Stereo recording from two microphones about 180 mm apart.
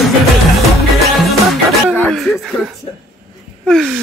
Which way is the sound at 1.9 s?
10° left (ahead or behind).